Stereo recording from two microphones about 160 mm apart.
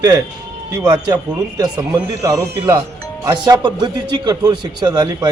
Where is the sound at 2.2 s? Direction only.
20° right (ahead or behind).